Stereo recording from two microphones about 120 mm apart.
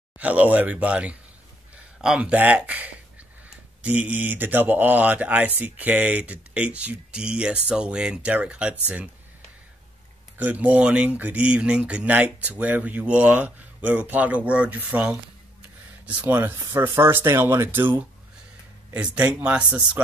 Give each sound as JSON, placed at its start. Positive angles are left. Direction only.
{"t": 0.2, "sound": "speech", "side_deg": -10}
{"t": 10.3, "sound": "speech", "side_deg": -15}